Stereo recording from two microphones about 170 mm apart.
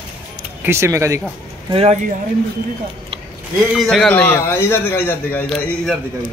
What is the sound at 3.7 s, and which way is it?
A man's voice, centre (ahead or behind).